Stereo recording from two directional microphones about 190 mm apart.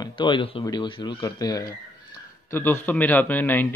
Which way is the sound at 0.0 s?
25° left (ahead or behind).